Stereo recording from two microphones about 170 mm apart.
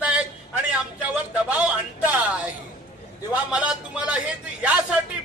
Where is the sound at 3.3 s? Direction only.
5° right (ahead or behind).